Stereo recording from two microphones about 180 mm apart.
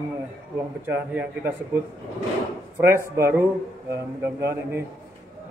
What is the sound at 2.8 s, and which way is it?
A man's voice, 15° right (ahead or behind).